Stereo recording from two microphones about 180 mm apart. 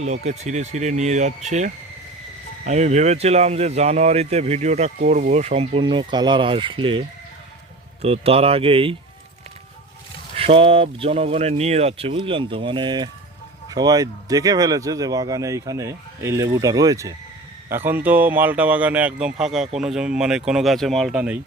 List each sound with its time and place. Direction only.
0.0 s speech: 40° right (ahead or behind)
8.0 s speech: 35° right (ahead or behind)
10.3 s speech: 30° right (ahead or behind); by 21.3 s 5° right (ahead or behind)